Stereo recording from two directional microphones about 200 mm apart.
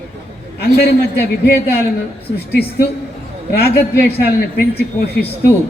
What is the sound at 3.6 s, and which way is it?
Speech, 55° left (ahead or behind).